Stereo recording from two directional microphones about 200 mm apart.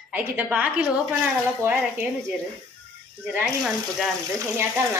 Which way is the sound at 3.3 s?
5° right (ahead or behind).